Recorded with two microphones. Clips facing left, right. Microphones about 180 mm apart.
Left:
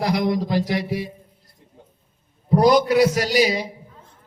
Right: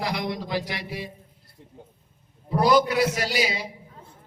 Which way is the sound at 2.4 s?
40° left (ahead or behind).